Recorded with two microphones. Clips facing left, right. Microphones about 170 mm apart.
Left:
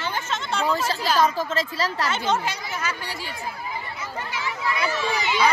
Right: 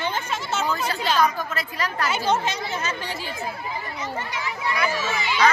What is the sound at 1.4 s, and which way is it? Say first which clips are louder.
Speech: left 3 dB; 30° left (ahead or behind).